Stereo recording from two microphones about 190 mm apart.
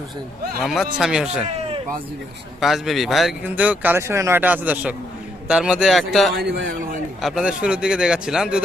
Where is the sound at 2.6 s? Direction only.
Centre (ahead or behind).